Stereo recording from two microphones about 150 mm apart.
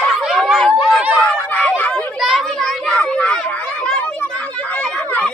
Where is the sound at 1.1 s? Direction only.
10° left (ahead or behind).